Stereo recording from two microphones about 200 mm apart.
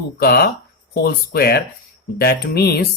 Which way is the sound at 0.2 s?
50° left (ahead or behind).